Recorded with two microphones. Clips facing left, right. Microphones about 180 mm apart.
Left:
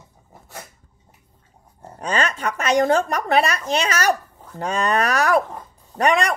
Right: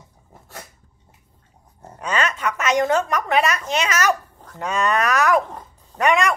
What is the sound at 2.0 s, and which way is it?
A woman's voice, 35° left (ahead or behind).